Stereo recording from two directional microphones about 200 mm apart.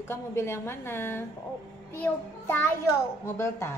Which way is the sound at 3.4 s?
15° left (ahead or behind).